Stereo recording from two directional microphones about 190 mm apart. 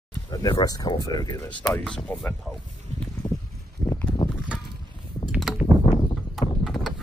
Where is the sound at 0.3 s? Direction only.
20° left (ahead or behind).